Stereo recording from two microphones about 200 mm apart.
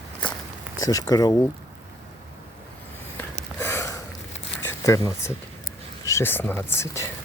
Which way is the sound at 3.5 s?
10° left (ahead or behind).